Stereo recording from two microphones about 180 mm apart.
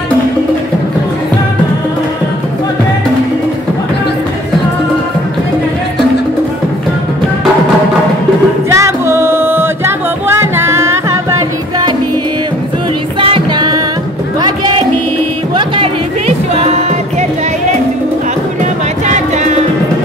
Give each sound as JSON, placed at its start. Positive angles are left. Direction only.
{"t": 8.6, "sound": "music", "side_deg": -15}
{"t": 13.2, "sound": "music", "side_deg": -25}
{"t": 15.5, "sound": "music", "side_deg": -30}
{"t": 19.0, "sound": "music", "side_deg": -40}